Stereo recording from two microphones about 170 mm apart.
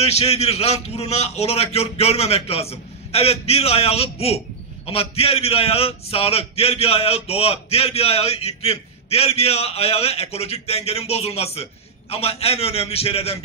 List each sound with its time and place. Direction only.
0.0 s a man's voice: 40° left (ahead or behind)